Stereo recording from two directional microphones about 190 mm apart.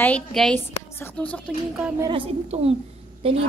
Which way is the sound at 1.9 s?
25° right (ahead or behind).